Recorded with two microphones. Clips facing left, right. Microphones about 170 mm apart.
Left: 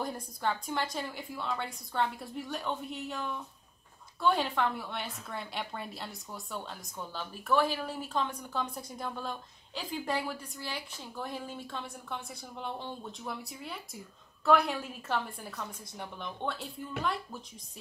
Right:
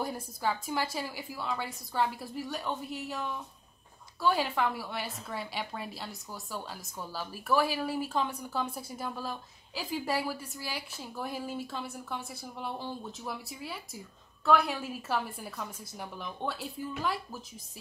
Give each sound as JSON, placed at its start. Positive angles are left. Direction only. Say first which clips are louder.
{"t": 0.0, "sound": "a woman's voice", "louder": "right 1 dB", "side_deg": -5}